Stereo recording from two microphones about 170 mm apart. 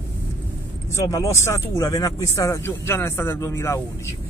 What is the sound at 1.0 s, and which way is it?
Speech, 20° left (ahead or behind).